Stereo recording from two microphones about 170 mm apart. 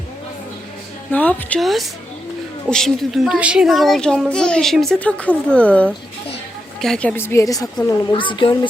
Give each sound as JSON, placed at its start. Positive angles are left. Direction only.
{"t": 1.1, "sound": "a child's voice", "side_deg": 10}